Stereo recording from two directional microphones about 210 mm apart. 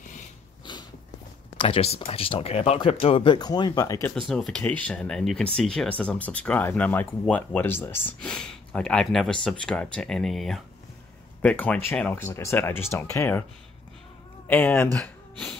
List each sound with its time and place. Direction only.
1.6 s speech: 25° left (ahead or behind)
4.3 s speech: centre (ahead or behind)
14.5 s speech: 10° left (ahead or behind)